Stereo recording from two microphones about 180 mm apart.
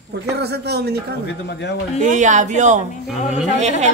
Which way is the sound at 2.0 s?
45° right (ahead or behind).